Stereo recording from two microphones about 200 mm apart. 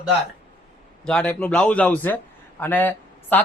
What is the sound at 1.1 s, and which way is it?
A man's voice, 5° left (ahead or behind).